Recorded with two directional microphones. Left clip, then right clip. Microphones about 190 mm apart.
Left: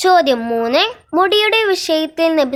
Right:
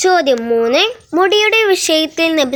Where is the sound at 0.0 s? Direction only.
Centre (ahead or behind).